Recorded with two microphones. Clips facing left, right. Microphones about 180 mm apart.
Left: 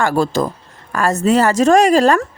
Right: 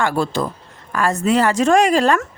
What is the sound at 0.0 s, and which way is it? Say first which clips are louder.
Speech: left 3 dB; 40° left (ahead or behind).